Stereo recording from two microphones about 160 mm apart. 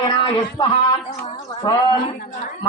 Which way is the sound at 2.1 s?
55° left (ahead or behind).